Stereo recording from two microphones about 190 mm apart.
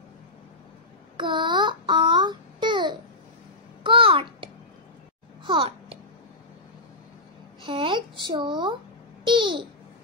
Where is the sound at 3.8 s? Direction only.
30° right (ahead or behind).